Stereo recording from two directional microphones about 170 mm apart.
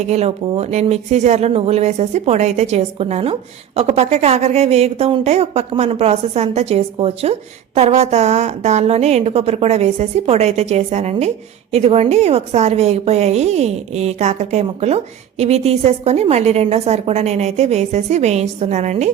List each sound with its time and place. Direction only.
0.1 s a woman's voice: 40° right (ahead or behind)